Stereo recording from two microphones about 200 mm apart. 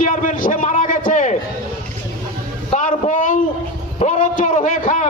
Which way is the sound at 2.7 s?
40° left (ahead or behind).